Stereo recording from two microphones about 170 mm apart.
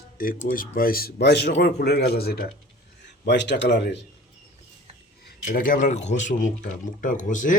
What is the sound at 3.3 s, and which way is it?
Speech, 90° left.